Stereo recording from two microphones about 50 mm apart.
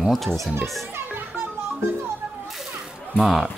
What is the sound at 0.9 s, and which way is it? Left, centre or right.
Music, right.